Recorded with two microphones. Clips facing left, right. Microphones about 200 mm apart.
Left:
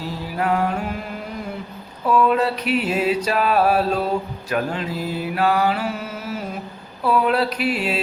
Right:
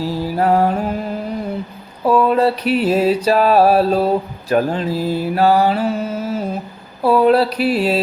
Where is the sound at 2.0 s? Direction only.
35° right (ahead or behind).